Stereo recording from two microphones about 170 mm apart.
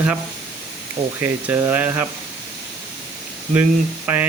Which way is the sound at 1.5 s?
10° right (ahead or behind).